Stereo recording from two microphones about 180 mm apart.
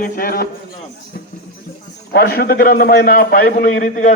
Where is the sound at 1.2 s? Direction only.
60° left (ahead or behind).